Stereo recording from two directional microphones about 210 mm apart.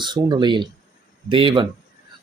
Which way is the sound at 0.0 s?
20° right (ahead or behind).